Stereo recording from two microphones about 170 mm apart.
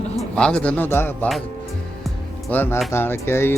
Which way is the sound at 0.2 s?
5° left (ahead or behind).